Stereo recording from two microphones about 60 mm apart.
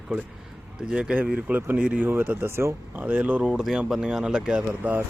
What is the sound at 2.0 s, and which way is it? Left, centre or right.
Speech, right.